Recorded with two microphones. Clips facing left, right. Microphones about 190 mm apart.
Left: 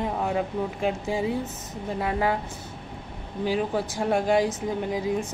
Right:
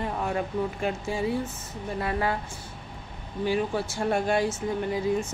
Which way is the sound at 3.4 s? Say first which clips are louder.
Left 1 dB; 15° left (ahead or behind).